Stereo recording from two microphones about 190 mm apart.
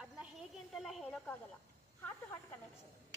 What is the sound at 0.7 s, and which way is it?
Speech, centre (ahead or behind).